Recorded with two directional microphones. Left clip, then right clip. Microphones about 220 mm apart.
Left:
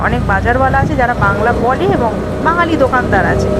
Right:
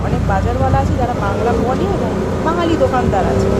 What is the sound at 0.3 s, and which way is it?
Speech, 15° left (ahead or behind).